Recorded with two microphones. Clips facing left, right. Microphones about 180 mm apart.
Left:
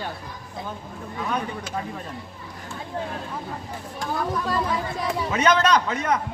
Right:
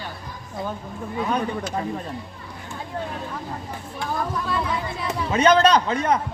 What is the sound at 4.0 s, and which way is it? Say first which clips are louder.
Speech: left 1 dB; 40° left (ahead or behind).